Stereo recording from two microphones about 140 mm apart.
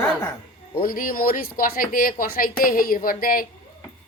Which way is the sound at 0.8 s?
90° left.